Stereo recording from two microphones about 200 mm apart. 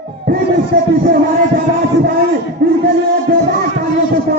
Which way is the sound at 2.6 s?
50° right (ahead or behind).